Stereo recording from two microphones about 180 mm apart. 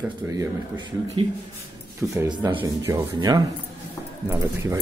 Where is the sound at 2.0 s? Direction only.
10° right (ahead or behind).